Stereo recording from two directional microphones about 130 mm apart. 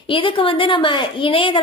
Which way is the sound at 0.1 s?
40° left (ahead or behind).